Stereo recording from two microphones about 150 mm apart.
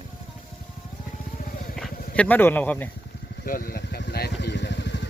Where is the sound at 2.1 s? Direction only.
10° left (ahead or behind).